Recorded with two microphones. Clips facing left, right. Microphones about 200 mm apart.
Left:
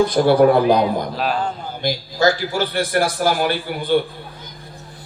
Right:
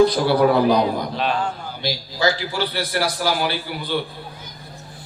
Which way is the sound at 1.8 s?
50° left (ahead or behind).